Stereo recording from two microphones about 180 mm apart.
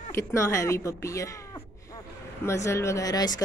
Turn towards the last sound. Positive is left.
turn(degrees=20)  # may be behind; listen again after turning